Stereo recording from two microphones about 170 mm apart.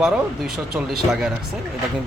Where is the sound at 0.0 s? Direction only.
Centre (ahead or behind).